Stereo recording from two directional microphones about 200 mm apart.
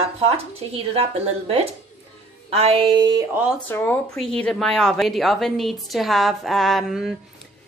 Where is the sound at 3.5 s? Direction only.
10° left (ahead or behind).